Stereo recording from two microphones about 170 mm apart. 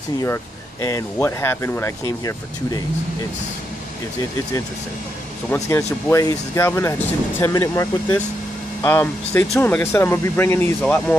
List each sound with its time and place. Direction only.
0.2 s speech: 20° left (ahead or behind)
5.5 s speech: 15° left (ahead or behind)